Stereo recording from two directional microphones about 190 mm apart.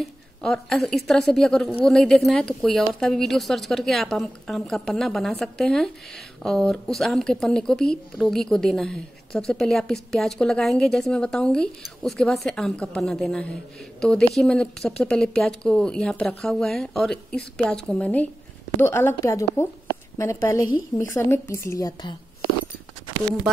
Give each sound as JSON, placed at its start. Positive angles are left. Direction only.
{"t": 0.0, "sound": "a woman's voice", "side_deg": 5}